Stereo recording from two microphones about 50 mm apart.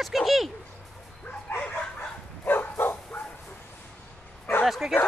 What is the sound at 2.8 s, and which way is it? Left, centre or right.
Dog, left.